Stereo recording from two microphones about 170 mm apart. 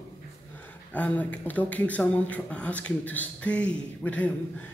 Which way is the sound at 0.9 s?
10° left (ahead or behind).